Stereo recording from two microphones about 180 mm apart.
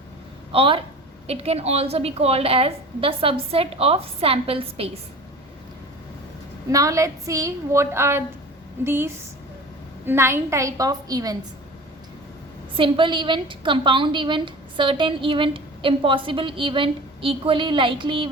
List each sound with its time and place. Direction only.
0.5 s a woman's voice: 30° right (ahead or behind)
6.7 s a woman's voice: 20° right (ahead or behind)
12.7 s a woman's voice: 30° right (ahead or behind)